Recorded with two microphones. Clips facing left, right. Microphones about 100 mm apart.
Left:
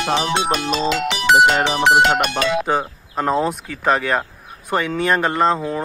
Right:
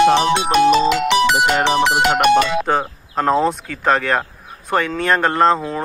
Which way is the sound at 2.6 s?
5° left (ahead or behind).